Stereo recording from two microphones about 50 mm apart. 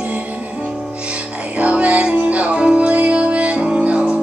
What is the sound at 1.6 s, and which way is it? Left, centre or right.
Music, right.